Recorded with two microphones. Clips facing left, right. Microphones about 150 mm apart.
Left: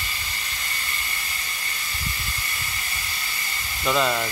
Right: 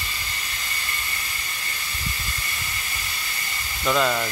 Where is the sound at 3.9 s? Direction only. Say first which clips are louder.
Right 1 dB; 5° left (ahead or behind).